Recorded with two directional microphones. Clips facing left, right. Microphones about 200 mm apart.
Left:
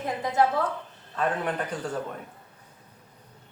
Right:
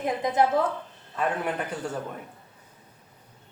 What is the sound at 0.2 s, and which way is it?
Speech, 15° right (ahead or behind).